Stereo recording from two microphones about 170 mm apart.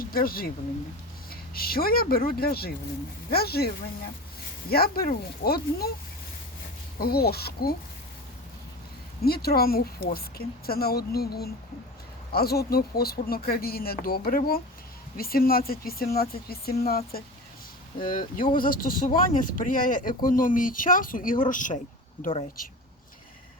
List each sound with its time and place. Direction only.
0.0 s speech: 60° left (ahead or behind)
4.7 s speech: 65° left (ahead or behind)
7.0 s speech: 65° left (ahead or behind)
9.2 s speech: 65° left (ahead or behind)
18.0 s speech: 55° left (ahead or behind)